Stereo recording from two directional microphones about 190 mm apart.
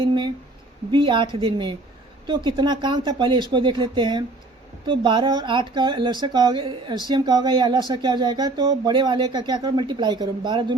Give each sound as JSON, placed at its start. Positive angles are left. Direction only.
{"t": 0.0, "sound": "speech", "side_deg": -25}